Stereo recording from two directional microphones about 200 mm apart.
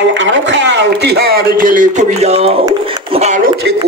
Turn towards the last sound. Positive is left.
turn(degrees=-35)  # may be behind; listen again after turning